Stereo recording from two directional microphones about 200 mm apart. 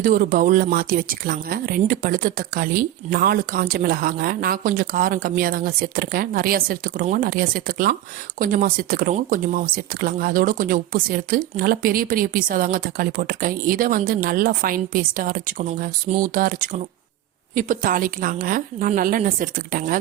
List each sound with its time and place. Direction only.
0.0 s speech: 45° right (ahead or behind)